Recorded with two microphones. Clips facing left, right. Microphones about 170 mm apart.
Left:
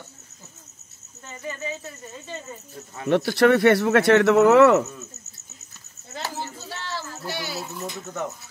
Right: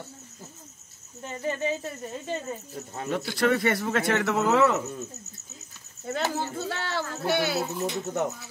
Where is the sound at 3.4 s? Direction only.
70° left (ahead or behind).